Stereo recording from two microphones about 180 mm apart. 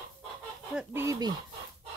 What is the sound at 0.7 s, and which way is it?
Speech, 15° right (ahead or behind).